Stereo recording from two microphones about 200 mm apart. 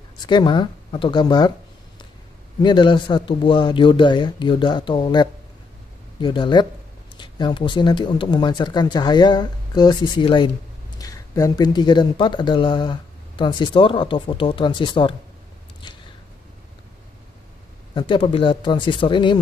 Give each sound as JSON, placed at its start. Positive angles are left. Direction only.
{"t": 0.3, "sound": "speech", "side_deg": 20}
{"t": 2.6, "sound": "speech", "side_deg": 20}
{"t": 17.9, "sound": "speech", "side_deg": 25}